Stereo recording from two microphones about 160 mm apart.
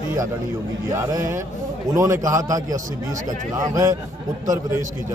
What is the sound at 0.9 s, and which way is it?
A man's voice, 20° right (ahead or behind).